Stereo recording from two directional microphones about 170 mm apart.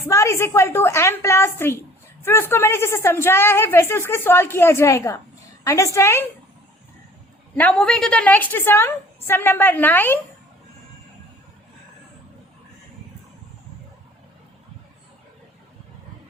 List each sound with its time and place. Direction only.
0.1 s a woman's voice: 15° left (ahead or behind)
7.5 s a woman's voice: 5° left (ahead or behind)